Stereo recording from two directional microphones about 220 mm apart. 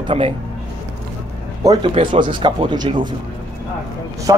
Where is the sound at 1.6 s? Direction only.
15° right (ahead or behind).